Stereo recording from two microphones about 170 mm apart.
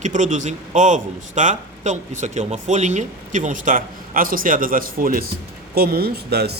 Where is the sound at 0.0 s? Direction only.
45° right (ahead or behind).